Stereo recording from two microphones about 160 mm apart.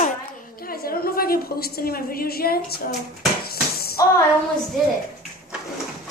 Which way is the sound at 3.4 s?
75° left (ahead or behind).